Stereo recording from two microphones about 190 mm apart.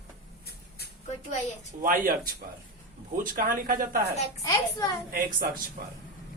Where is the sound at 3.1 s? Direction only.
45° right (ahead or behind).